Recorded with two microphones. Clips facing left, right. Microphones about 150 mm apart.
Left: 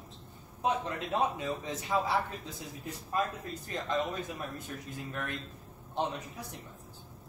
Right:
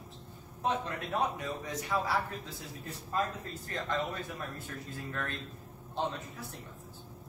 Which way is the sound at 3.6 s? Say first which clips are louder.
Left 2 dB; 20° left (ahead or behind).